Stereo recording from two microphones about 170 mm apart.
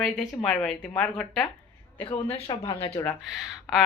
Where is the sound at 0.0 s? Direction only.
Centre (ahead or behind).